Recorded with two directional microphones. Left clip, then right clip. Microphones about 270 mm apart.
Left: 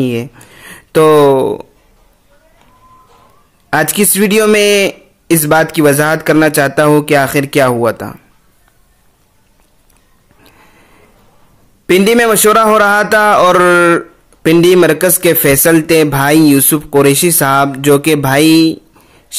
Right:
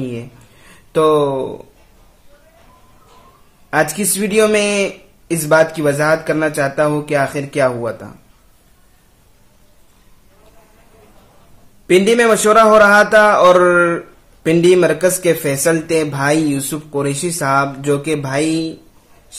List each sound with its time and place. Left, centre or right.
0.0 s speech: left
3.7 s a man's voice: left
11.9 s a man's voice: left